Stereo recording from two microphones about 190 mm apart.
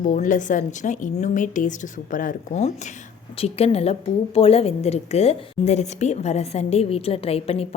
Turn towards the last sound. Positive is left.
turn(degrees=30)  # may be behind; listen again after turning